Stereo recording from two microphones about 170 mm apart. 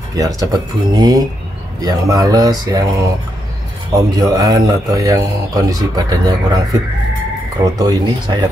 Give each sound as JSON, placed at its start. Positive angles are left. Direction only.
{"t": 0.1, "sound": "speech", "side_deg": -20}
{"t": 7.8, "sound": "speech", "side_deg": -25}